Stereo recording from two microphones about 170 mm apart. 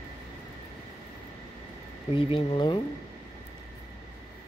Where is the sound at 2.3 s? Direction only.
30° left (ahead or behind).